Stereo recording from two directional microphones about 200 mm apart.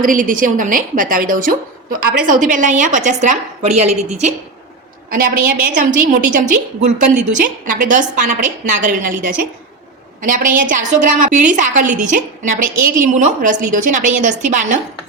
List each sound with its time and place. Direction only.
0.0 s a woman's voice: 40° right (ahead or behind)
5.1 s a woman's voice: 45° right (ahead or behind)